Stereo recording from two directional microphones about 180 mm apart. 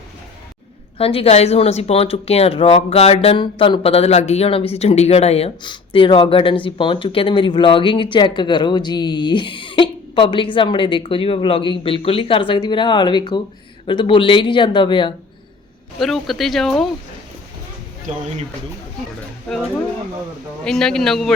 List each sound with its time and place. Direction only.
0.9 s speech: 35° left (ahead or behind)
16.0 s speech: centre (ahead or behind)
19.5 s speech: 5° left (ahead or behind)
20.7 s speech: 5° left (ahead or behind)